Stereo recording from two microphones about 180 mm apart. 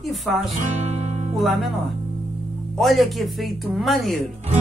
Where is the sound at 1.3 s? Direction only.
Centre (ahead or behind).